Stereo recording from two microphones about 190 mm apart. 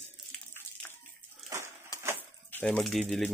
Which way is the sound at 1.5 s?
20° right (ahead or behind).